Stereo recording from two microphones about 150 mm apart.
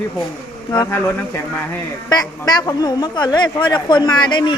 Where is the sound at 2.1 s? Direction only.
25° left (ahead or behind).